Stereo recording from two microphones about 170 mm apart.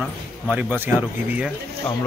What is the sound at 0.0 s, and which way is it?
Speech, 10° right (ahead or behind).